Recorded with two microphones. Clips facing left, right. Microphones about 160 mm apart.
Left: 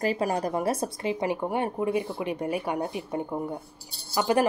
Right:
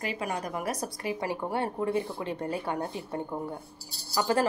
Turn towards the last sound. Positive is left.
turn(degrees=20)  # may be behind; listen again after turning